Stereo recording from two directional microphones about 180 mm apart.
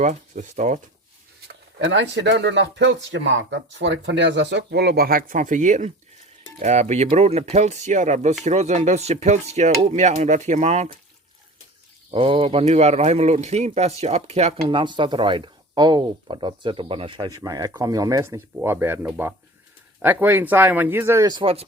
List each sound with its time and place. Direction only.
0.0 s speech: 40° right (ahead or behind)
1.5 s speech: 90° right; by 10.8 s 40° right (ahead or behind)
12.1 s speech: 30° right (ahead or behind)